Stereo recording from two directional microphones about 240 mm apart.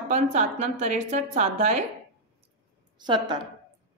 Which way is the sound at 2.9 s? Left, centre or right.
Centre.